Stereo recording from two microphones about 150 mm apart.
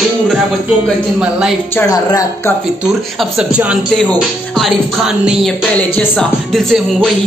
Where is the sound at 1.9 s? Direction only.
25° left (ahead or behind).